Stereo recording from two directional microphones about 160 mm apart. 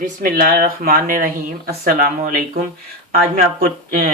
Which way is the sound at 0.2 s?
65° right (ahead or behind).